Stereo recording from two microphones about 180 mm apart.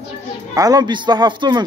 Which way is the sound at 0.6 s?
20° right (ahead or behind).